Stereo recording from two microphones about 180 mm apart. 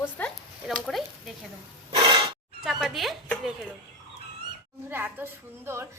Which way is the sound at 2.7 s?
Centre (ahead or behind).